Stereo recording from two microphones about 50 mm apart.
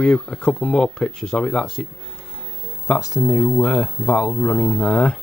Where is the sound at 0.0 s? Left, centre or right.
Centre.